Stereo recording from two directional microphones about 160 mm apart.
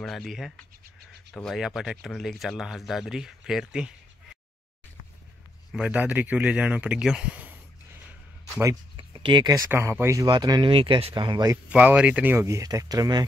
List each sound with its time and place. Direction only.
0.0 s speech: centre (ahead or behind)
5.7 s speech: 5° right (ahead or behind)
8.9 s a sound: 30° right (ahead or behind)
9.7 s speech: 15° right (ahead or behind)
11.5 s speech: 10° right (ahead or behind)